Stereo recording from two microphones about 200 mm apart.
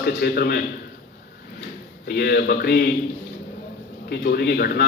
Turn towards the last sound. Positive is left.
turn(degrees=50)  # may be behind; listen again after turning